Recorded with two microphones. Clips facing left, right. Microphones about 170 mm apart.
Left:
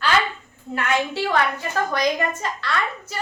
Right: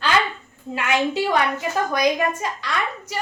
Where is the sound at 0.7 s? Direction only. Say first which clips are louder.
Right 2 dB; 15° right (ahead or behind).